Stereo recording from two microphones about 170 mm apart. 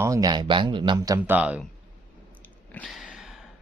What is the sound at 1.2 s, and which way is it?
Speech, 10° right (ahead or behind).